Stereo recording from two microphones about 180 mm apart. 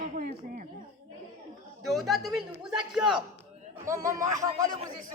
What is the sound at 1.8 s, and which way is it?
A man's voice, centre (ahead or behind).